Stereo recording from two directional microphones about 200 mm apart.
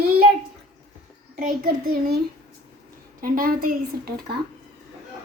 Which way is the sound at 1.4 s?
45° right (ahead or behind).